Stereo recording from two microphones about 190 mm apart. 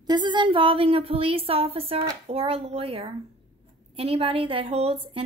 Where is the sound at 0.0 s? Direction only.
25° right (ahead or behind).